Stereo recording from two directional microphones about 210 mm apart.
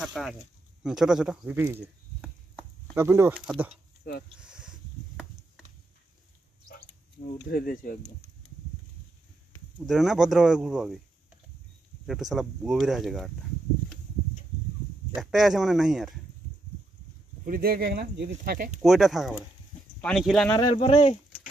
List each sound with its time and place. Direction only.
0.0 s speech: centre (ahead or behind)
4.4 s a sound: 5° right (ahead or behind)
7.5 s speech: 40° left (ahead or behind)
9.8 s speech: centre (ahead or behind)
12.1 s speech: centre (ahead or behind)
15.1 s speech: centre (ahead or behind)
17.5 s speech: 45° right (ahead or behind)
18.8 s speech: centre (ahead or behind)
20.5 s speech: 20° left (ahead or behind)